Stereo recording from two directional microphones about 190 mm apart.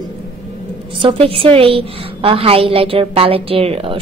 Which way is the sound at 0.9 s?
30° right (ahead or behind).